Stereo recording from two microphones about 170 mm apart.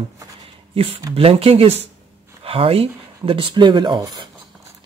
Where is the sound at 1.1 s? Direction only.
35° right (ahead or behind).